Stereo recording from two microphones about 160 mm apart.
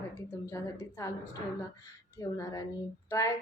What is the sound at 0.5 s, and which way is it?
Speech, 20° left (ahead or behind).